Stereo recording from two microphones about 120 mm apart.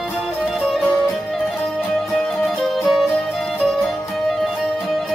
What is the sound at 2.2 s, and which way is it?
Music, centre (ahead or behind).